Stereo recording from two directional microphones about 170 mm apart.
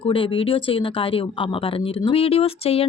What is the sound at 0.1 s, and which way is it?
Speech, 30° left (ahead or behind).